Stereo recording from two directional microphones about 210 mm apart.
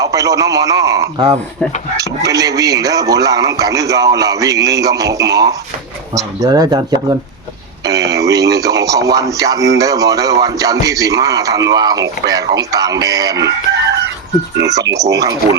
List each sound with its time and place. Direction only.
0.0 s a man's voice: 15° right (ahead or behind)
14.6 s a man's voice: 15° right (ahead or behind)